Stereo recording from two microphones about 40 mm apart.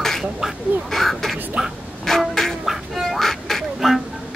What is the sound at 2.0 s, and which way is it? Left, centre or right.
Quack, centre.